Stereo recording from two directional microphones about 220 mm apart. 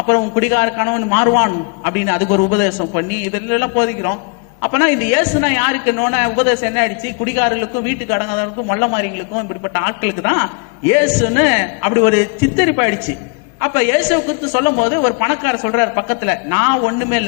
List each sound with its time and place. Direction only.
0.1 s a woman's voice: 15° left (ahead or behind)